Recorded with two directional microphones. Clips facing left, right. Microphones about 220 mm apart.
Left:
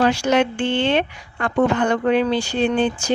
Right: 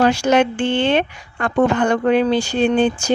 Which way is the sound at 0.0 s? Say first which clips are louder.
Right 2 dB; 45° right (ahead or behind).